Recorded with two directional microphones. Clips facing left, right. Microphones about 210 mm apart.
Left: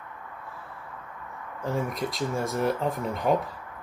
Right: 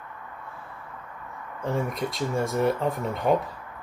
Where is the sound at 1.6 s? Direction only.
Centre (ahead or behind).